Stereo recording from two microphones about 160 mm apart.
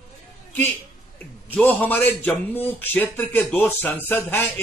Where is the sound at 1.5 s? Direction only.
10° left (ahead or behind).